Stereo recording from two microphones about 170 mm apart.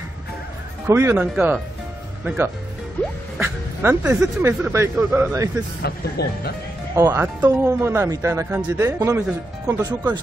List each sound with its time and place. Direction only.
0.8 s speech: 15° right (ahead or behind)
5.8 s speech: 70° left (ahead or behind)
7.0 s speech: 15° right (ahead or behind)